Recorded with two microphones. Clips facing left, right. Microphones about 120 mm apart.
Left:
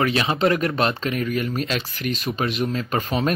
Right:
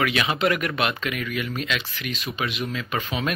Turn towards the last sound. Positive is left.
turn(degrees=40)  # may be behind; listen again after turning